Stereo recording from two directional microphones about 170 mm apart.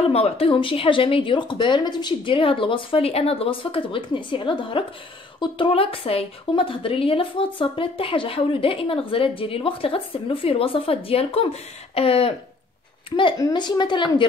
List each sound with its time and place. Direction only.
0.0 s a woman's voice: 35° left (ahead or behind)